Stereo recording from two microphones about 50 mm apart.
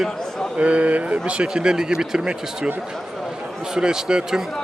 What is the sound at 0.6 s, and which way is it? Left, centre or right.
A man's voice, right.